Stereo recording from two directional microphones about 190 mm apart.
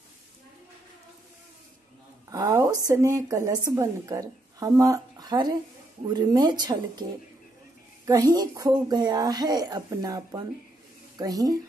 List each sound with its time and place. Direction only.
2.2 s a woman's voice: 15° right (ahead or behind)